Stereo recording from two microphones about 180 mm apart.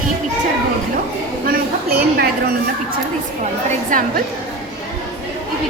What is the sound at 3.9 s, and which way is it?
Speech, 45° right (ahead or behind).